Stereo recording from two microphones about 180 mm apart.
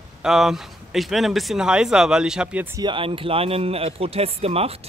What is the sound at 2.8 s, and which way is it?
Speech, 30° right (ahead or behind).